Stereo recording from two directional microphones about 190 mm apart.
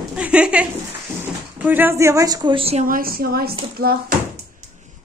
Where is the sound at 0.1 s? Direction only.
5° right (ahead or behind).